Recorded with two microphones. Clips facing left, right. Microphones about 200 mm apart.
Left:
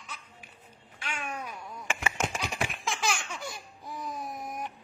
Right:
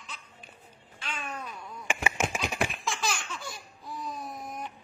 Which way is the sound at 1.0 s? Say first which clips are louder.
Left 1 dB; 15° left (ahead or behind).